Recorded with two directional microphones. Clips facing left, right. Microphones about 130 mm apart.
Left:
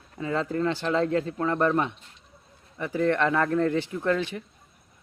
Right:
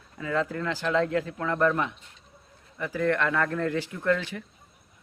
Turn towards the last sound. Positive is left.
turn(degrees=25)  # may be behind; listen again after turning